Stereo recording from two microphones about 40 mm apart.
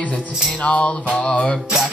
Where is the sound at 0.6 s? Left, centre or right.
Left.